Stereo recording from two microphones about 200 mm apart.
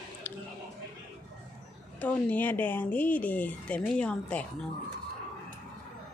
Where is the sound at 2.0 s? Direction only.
10° left (ahead or behind).